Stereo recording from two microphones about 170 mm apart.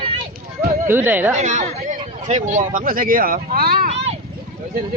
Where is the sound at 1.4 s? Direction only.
45° right (ahead or behind); by 3.8 s 60° right (ahead or behind).